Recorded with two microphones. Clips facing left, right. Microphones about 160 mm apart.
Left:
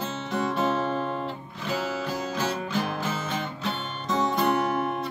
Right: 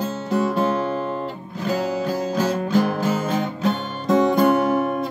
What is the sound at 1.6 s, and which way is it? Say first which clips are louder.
Music: right 7 dB; 40° right (ahead or behind).